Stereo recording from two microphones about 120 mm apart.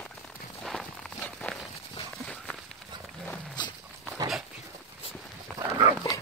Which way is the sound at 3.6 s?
35° left (ahead or behind).